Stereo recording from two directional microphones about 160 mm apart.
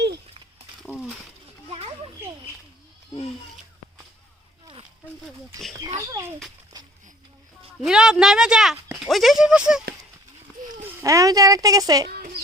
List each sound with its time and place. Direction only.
0.9 s mechanisms: centre (ahead or behind)
4.6 s a sound: 30° right (ahead or behind)
6.0 s speech: 20° right (ahead or behind)
7.8 s speech: 5° right (ahead or behind)
10.6 s a sound: 55° right (ahead or behind)
11.0 s speech: 20° right (ahead or behind)